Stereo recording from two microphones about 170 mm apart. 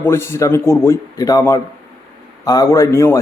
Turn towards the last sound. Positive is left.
turn(degrees=15)  # may be behind; listen again after turning